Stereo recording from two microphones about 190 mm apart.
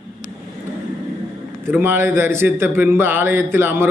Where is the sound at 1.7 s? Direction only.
10° right (ahead or behind).